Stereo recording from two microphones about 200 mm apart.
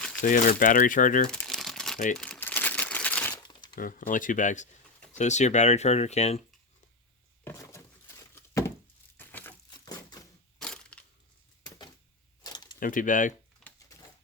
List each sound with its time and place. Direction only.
0.2 s speech: 40° left (ahead or behind)
1.3 s crumpling: centre (ahead or behind)
2.1 s typewriter: 5° left (ahead or behind)
3.8 s speech: 45° left (ahead or behind)
7.4 s a sound: 15° left (ahead or behind)
10.6 s crushing: 5° left (ahead or behind)
12.4 s a sound: 20° left (ahead or behind)
12.8 s speech: 40° left (ahead or behind)
13.6 s typewriter: centre (ahead or behind)